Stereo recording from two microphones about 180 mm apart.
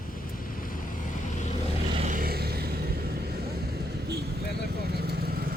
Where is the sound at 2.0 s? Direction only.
50° right (ahead or behind).